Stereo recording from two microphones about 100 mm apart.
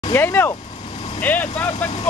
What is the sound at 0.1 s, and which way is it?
Speech, 20° left (ahead or behind).